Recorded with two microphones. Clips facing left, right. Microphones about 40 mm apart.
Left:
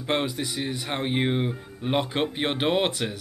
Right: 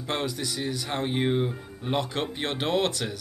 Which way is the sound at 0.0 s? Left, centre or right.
Left.